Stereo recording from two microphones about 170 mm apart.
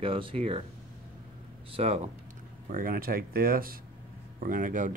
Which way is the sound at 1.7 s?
35° right (ahead or behind).